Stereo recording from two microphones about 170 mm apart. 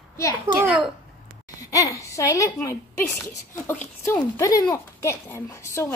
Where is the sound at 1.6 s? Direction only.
20° left (ahead or behind).